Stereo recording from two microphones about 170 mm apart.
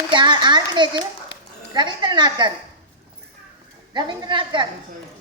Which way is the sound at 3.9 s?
25° right (ahead or behind).